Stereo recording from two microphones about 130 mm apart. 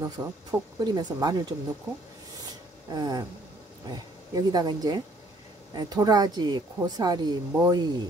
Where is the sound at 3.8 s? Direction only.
30° right (ahead or behind).